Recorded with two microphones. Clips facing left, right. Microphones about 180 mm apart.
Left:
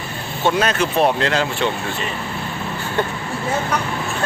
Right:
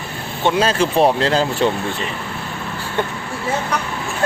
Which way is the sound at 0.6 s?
30° right (ahead or behind).